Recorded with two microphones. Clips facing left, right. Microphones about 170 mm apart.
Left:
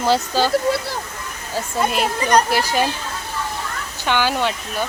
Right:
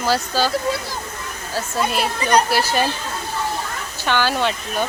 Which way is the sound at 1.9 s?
20° left (ahead or behind).